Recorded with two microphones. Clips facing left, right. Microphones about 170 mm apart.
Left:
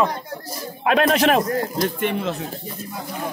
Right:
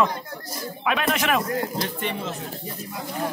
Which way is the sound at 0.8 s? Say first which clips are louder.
Left 7 dB; 40° left (ahead or behind).